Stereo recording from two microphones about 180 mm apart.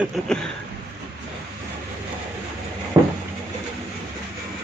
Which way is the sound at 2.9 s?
15° right (ahead or behind).